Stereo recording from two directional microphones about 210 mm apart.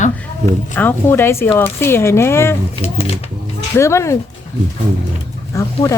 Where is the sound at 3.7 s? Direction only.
15° left (ahead or behind).